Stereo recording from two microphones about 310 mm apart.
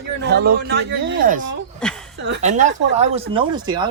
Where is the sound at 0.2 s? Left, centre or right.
Right.